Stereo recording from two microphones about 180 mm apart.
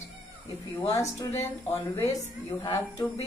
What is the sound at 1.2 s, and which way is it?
Speech, 15° left (ahead or behind).